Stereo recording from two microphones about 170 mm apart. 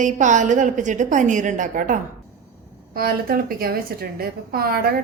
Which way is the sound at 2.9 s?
60° right (ahead or behind).